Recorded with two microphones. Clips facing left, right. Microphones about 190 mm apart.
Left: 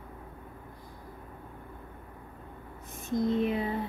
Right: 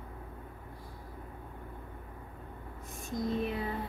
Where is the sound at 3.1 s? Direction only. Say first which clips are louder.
Left 6 dB; 20° left (ahead or behind).